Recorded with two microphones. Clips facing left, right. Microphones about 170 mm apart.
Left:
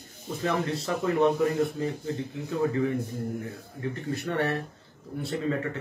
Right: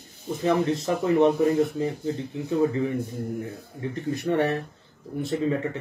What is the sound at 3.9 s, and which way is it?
Speech, 20° right (ahead or behind).